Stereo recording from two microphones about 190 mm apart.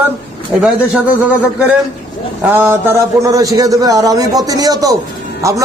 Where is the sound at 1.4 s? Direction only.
5° right (ahead or behind).